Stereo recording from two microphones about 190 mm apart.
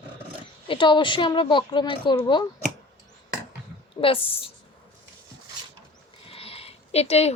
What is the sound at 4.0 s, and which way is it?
Speech, 30° left (ahead or behind).